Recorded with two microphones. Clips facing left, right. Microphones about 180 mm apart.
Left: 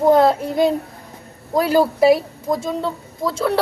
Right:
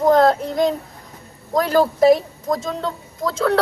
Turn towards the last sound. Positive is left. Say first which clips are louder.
# even
turn(degrees=5)  # may be behind; listen again after turning